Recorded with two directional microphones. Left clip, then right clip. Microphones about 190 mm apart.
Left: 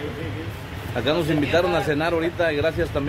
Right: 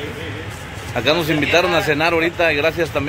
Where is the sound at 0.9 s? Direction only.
15° right (ahead or behind).